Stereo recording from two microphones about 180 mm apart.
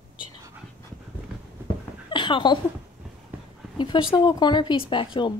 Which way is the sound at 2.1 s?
25° left (ahead or behind).